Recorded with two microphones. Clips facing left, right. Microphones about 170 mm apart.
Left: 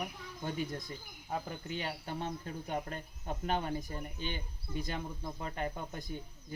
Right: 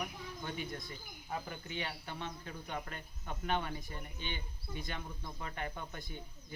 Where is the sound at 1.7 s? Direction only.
40° left (ahead or behind).